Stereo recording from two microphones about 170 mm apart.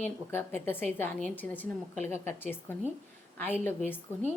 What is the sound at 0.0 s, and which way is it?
A woman's voice, 15° left (ahead or behind).